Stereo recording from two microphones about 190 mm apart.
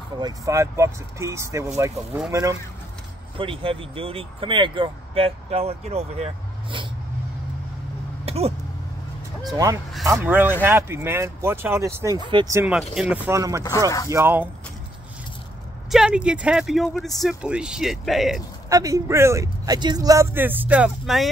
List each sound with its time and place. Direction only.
0.2 s speech: 15° right (ahead or behind)
3.3 s speech: 30° right (ahead or behind)
8.3 s speech: 30° right (ahead or behind)
10.0 s speech: 15° right (ahead or behind)
12.5 s speech: 5° right (ahead or behind)
15.9 s speech: 5° right (ahead or behind)
18.7 s speech: 20° right (ahead or behind); by 21.3 s centre (ahead or behind)